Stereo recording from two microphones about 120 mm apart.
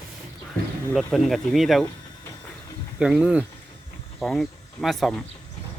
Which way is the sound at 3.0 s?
5° right (ahead or behind).